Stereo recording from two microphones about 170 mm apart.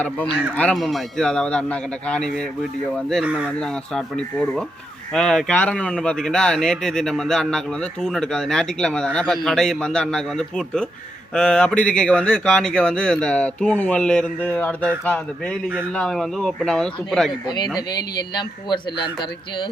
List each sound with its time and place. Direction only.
0.5 s speech: 5° left (ahead or behind)
17.4 s a man's voice: 25° left (ahead or behind)